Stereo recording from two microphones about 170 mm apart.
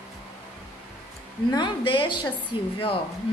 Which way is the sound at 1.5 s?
25° left (ahead or behind).